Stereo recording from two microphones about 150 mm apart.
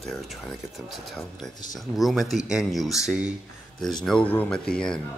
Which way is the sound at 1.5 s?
25° left (ahead or behind).